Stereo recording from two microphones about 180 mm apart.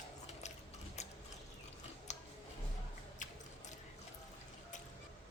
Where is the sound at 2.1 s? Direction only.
40° left (ahead or behind).